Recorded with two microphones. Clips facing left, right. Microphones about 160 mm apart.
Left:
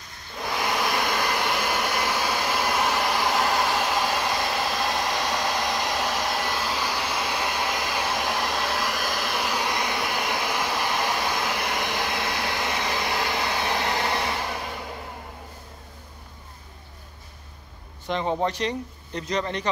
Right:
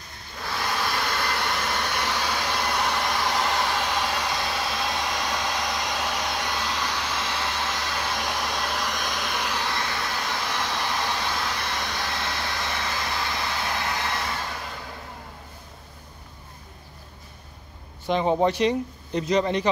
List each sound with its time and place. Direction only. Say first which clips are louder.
0.4 s a sound: left 3 dB; 15° left (ahead or behind)
12.4 s hair dryer: left 3 dB; 15° left (ahead or behind)
18.0 s speech: right 4 dB; 15° right (ahead or behind)